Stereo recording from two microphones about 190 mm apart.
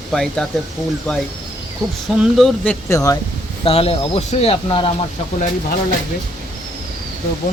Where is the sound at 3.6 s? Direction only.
30° left (ahead or behind).